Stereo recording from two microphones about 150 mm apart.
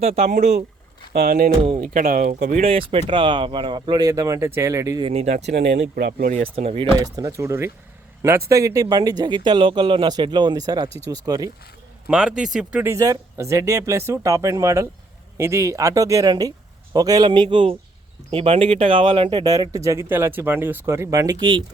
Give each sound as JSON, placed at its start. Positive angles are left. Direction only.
{"t": 0.0, "sound": "speech", "side_deg": -45}
{"t": 1.1, "sound": "speech", "side_deg": -85}
{"t": 1.8, "sound": "speech", "side_deg": -65}
{"t": 2.6, "sound": "speech", "side_deg": -35}
{"t": 4.9, "sound": "speech", "side_deg": -40}
{"t": 5.5, "sound": "speech", "side_deg": -85}
{"t": 6.3, "sound": "speech", "side_deg": -45}
{"t": 7.0, "sound": "speech", "side_deg": -20}
{"t": 12.0, "sound": "speech", "side_deg": -5}
{"t": 12.8, "sound": "speech", "side_deg": -20}
{"t": 19.5, "sound": "speech", "side_deg": -25}